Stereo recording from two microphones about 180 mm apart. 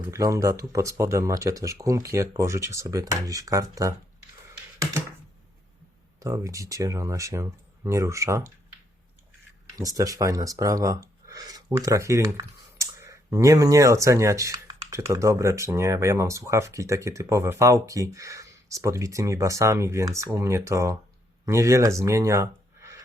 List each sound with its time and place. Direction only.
0.0 s speech: 15° right (ahead or behind)
6.1 s speech: 15° right (ahead or behind)
9.7 s speech: 20° right (ahead or behind)
11.3 s a sound: 20° right (ahead or behind)
11.9 s speech: 15° right (ahead or behind)